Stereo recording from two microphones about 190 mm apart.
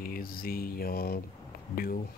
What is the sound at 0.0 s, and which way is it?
Speech, 50° left (ahead or behind).